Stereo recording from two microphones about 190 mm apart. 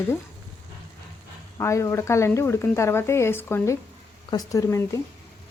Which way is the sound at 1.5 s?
15° left (ahead or behind).